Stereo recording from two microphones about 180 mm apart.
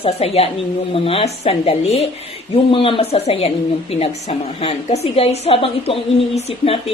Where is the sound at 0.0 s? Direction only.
35° left (ahead or behind).